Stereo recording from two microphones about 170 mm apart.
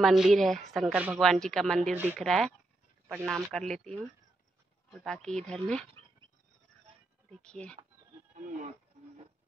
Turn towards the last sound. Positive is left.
turn(degrees=5)  # may be behind; listen again after turning